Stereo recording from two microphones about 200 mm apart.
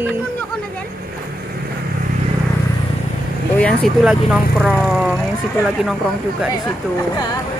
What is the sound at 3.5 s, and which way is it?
Speech, 5° left (ahead or behind).